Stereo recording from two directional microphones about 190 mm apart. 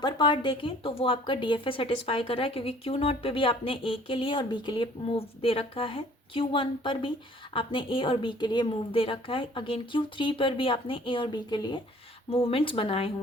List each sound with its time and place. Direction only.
0.0 s speech: 25° left (ahead or behind)